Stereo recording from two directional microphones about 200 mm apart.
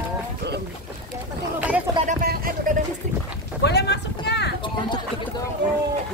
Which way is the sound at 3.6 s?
55° left (ahead or behind).